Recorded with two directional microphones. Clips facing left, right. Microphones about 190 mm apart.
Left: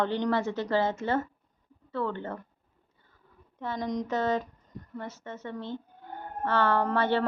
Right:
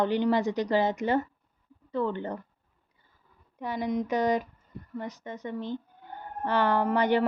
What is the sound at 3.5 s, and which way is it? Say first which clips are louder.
A woman's voice: right 2 dB; 10° right (ahead or behind).